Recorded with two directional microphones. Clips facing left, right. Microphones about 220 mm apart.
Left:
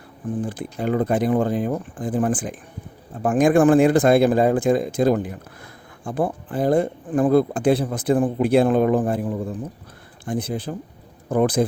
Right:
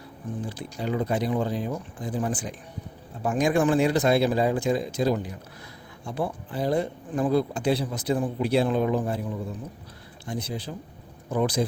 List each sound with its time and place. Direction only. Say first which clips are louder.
0.4 s speech: left 4 dB; 50° left (ahead or behind)